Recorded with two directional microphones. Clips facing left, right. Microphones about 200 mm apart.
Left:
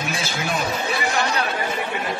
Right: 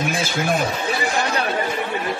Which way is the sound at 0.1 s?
50° right (ahead or behind).